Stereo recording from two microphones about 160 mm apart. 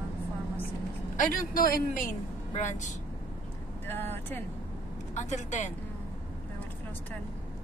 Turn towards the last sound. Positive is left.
turn(degrees=50)  # may be behind; listen again after turning